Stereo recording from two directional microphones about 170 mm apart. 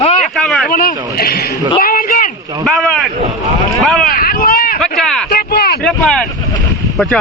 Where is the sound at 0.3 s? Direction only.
Centre (ahead or behind).